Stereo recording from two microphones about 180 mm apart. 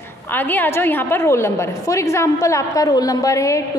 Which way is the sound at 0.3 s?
10° left (ahead or behind).